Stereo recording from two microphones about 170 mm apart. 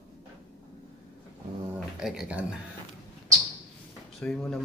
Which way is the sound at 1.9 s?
5° right (ahead or behind).